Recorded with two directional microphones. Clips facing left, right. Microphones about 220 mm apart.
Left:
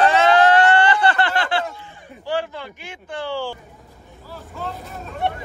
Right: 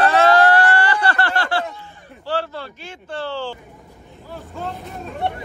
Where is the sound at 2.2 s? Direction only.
15° left (ahead or behind).